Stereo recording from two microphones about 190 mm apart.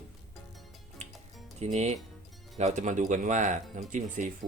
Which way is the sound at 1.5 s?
35° right (ahead or behind).